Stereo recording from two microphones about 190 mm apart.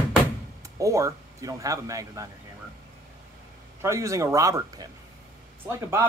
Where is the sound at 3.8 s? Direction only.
15° right (ahead or behind).